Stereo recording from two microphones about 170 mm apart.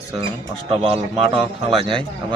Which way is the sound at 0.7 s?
35° right (ahead or behind).